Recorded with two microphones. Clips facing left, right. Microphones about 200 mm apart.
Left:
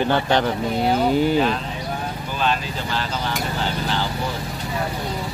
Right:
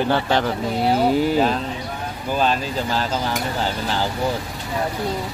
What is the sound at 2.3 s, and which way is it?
Speech, 40° right (ahead or behind).